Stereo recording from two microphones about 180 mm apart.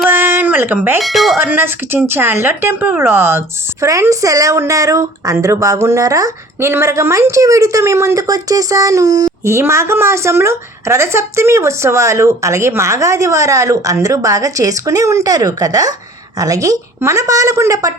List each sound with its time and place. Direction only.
0.1 s a sound: 10° right (ahead or behind)
0.9 s speech: centre (ahead or behind)
1.4 s a woman's voice: 10° right (ahead or behind)